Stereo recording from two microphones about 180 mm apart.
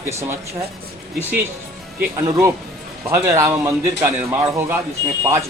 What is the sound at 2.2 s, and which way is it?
A man's voice, 15° right (ahead or behind).